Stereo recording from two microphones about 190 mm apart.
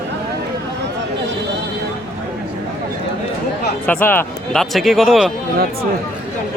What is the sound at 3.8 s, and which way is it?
Speech, 10° left (ahead or behind).